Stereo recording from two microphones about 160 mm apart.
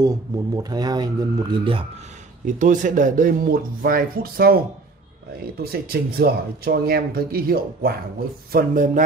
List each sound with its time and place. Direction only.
0.0 s speech: 25° right (ahead or behind)
2.4 s speech: 50° right (ahead or behind)